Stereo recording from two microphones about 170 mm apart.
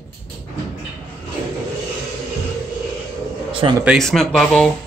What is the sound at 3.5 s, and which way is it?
Speech, 30° right (ahead or behind).